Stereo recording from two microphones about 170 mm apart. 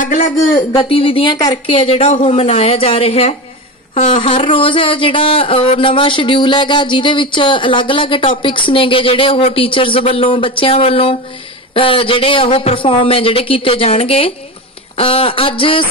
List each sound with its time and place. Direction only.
0.6 s speech: 30° left (ahead or behind)